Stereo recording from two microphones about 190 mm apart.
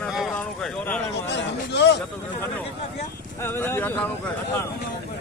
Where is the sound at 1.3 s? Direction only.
65° left (ahead or behind).